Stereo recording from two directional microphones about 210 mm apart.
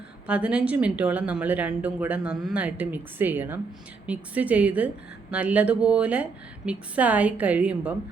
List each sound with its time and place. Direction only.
0.3 s a woman's voice: 5° right (ahead or behind)